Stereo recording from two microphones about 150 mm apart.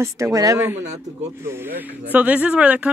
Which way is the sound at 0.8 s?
50° right (ahead or behind).